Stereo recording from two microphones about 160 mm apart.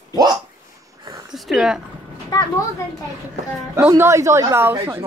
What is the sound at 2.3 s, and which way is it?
Speech, 25° left (ahead or behind).